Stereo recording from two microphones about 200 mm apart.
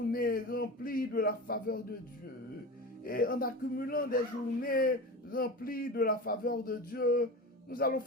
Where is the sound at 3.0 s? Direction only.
45° left (ahead or behind).